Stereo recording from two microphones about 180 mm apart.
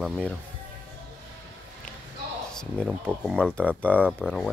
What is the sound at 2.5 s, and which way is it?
Speech, 5° left (ahead or behind).